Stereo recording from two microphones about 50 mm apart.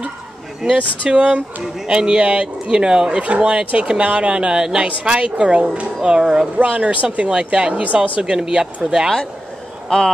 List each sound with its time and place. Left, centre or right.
0.7 s speech: right
6.6 s speech: right
8.2 s speech: centre
9.8 s speech: centre